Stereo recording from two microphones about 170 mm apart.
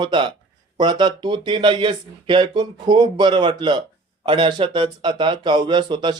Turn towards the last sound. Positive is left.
turn(degrees=-25)  # may be behind; listen again after turning